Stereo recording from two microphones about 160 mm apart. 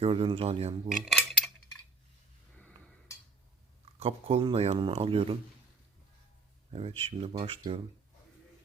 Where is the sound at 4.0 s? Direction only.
40° right (ahead or behind).